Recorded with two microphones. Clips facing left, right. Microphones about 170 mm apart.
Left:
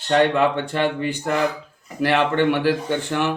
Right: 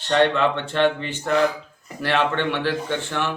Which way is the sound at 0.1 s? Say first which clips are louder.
Left 1 dB; 10° left (ahead or behind).